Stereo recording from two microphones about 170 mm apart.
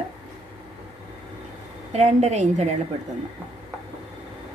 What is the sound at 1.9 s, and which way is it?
Speech, 40° right (ahead or behind).